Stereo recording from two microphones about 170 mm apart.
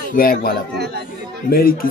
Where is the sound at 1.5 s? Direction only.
60° left (ahead or behind).